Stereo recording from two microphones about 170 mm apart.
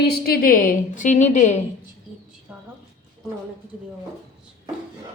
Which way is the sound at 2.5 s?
10° right (ahead or behind).